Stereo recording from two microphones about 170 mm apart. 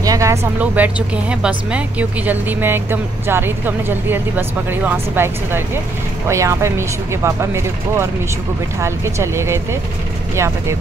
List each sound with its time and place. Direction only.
0.0 s speech: 20° right (ahead or behind)